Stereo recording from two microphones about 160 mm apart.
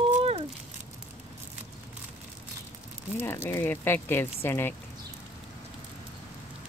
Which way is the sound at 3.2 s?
15° left (ahead or behind).